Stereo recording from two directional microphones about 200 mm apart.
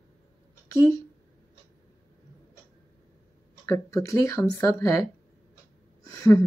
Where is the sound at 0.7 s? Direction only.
15° left (ahead or behind).